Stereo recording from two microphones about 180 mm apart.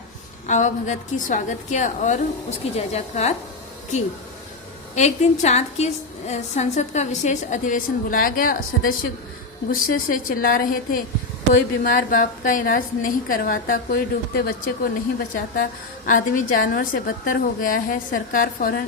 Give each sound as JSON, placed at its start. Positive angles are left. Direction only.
{"t": 0.4, "sound": "a woman's voice", "side_deg": 40}
{"t": 4.9, "sound": "a woman's voice", "side_deg": 40}
{"t": 16.0, "sound": "a woman's voice", "side_deg": 50}